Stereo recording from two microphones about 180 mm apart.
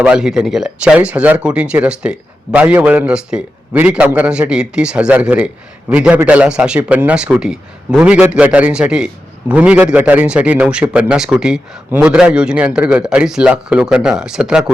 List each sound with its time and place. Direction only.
0.0 s a man's voice: 5° right (ahead or behind)